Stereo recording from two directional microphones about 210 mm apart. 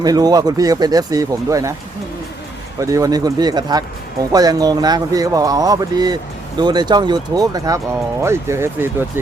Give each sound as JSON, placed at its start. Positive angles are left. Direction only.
{"t": 0.0, "sound": "speech", "side_deg": -20}
{"t": 2.8, "sound": "speech", "side_deg": -15}